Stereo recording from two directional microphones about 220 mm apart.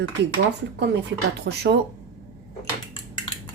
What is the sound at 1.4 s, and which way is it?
Speech, 50° right (ahead or behind).